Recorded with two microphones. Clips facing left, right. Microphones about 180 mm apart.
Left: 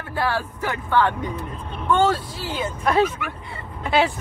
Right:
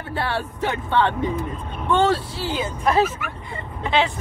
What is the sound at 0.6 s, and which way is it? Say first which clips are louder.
Speech: right 1 dB; 25° right (ahead or behind).